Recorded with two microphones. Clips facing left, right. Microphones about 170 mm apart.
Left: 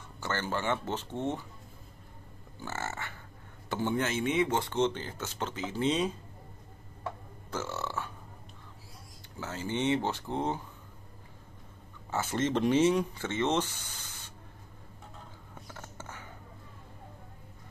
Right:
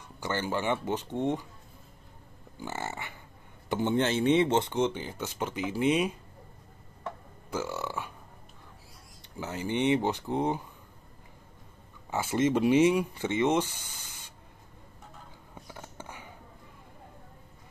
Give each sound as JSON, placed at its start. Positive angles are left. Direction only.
{"t": 0.2, "sound": "speech", "side_deg": -15}
{"t": 2.6, "sound": "speech", "side_deg": -15}
{"t": 4.7, "sound": "speech", "side_deg": -10}
{"t": 7.5, "sound": "burping", "side_deg": -10}
{"t": 9.4, "sound": "speech", "side_deg": -15}
{"t": 12.1, "sound": "speech", "side_deg": -10}
{"t": 15.6, "sound": "a sound", "side_deg": -15}